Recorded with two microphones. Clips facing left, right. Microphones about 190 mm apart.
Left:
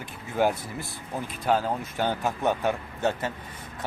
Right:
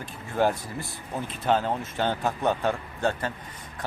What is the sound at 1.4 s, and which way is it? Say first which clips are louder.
Speech: even; 5° left (ahead or behind).